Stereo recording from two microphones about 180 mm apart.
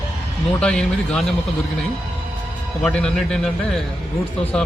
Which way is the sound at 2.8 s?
5° left (ahead or behind).